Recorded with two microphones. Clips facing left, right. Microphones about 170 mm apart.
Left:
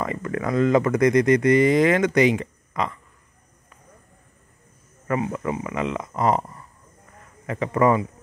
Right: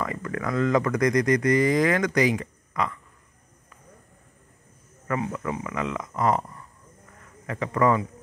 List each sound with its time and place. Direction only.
0.0 s speech: 20° left (ahead or behind)
5.0 s speech: 20° left (ahead or behind)
7.4 s speech: 20° left (ahead or behind)